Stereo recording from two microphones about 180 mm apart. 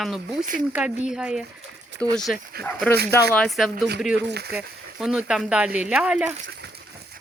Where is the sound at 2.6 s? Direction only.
60° right (ahead or behind).